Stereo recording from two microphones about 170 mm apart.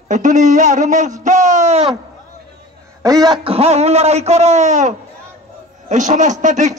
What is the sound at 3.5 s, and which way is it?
A man's voice, 40° right (ahead or behind).